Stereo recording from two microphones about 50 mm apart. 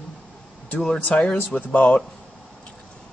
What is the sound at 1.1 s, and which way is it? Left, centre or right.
Speech, left.